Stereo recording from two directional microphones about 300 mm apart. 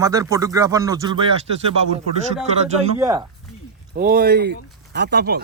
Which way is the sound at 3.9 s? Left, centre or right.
Right.